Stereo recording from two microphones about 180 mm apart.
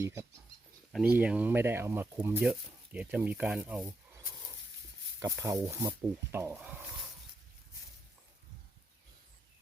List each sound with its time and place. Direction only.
0.0 s speech: 15° right (ahead or behind)
5.2 s speech: 15° right (ahead or behind)